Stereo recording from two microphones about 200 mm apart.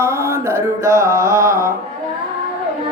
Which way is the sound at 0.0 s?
15° right (ahead or behind).